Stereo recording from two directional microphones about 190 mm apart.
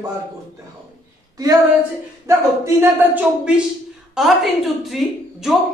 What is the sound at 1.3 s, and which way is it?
A woman's voice, 20° right (ahead or behind).